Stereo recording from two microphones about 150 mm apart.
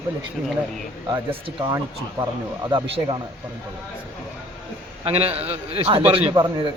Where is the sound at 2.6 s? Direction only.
30° right (ahead or behind).